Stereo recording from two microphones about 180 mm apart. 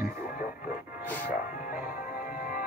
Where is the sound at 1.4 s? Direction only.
50° left (ahead or behind).